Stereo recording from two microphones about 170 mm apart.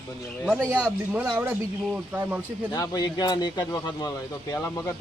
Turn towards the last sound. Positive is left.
turn(degrees=15)  # may be behind; listen again after turning